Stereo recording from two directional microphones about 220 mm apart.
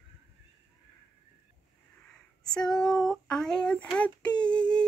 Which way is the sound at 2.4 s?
5° left (ahead or behind).